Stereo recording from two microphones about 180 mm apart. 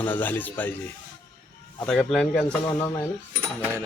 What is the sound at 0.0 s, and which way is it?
Speech, 10° left (ahead or behind).